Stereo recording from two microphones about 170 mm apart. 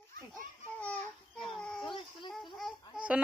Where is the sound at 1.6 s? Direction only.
5° left (ahead or behind).